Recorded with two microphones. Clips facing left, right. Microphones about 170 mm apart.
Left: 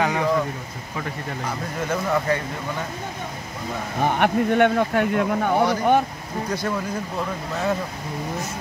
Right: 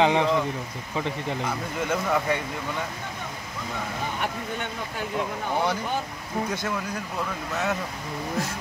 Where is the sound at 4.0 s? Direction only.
65° left (ahead or behind).